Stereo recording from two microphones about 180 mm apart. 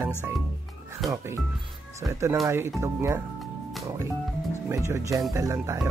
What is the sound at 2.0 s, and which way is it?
Speech, 15° right (ahead or behind).